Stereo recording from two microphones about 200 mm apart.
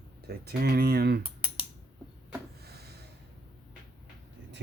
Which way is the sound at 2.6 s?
50° right (ahead or behind).